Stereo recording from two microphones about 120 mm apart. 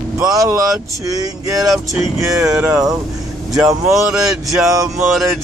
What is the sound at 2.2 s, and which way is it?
Speech, 25° right (ahead or behind).